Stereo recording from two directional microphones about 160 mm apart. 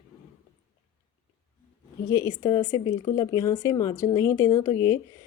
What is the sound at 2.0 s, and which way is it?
A woman's voice, 20° left (ahead or behind).